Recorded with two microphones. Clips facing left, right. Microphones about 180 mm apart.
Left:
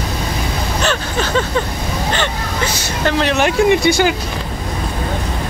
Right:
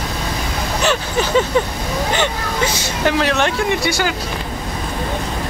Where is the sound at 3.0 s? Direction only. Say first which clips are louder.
Even; 5° right (ahead or behind).